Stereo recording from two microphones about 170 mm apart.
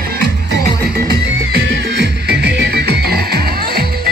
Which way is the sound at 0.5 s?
70° right (ahead or behind).